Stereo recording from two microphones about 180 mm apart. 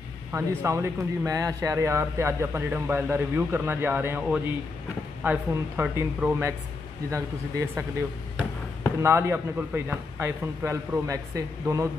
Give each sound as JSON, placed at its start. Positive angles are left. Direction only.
{"t": 0.3, "sound": "speech", "side_deg": -15}
{"t": 9.0, "sound": "speech", "side_deg": -15}